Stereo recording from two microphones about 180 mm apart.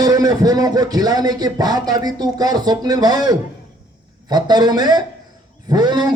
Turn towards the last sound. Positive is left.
turn(degrees=-25)  # may be behind; listen again after turning